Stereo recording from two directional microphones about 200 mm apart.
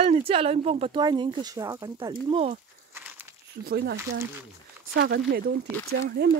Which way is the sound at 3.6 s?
55° right (ahead or behind).